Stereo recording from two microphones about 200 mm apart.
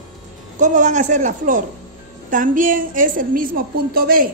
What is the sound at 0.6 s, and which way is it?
A woman's voice, 40° right (ahead or behind).